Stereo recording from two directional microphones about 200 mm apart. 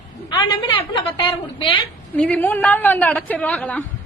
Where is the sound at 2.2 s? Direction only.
10° left (ahead or behind).